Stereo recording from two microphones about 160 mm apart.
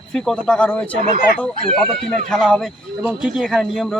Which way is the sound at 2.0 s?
5° left (ahead or behind).